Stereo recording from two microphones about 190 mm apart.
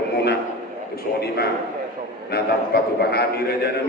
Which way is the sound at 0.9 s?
55° left (ahead or behind).